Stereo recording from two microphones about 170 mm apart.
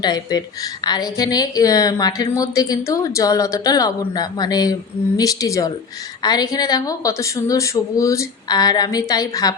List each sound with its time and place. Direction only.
0.0 s a woman's voice: 25° left (ahead or behind)